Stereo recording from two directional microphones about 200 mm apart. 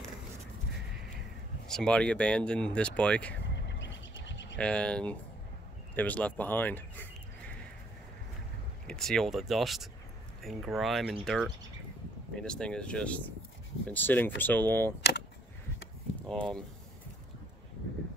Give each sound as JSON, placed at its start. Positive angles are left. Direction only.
{"t": 1.7, "sound": "speech", "side_deg": 5}
{"t": 3.6, "sound": "a sound", "side_deg": 65}
{"t": 4.2, "sound": "bird", "side_deg": 65}
{"t": 4.6, "sound": "speech", "side_deg": 5}
{"t": 8.8, "sound": "speech", "side_deg": 0}
{"t": 16.2, "sound": "speech", "side_deg": 5}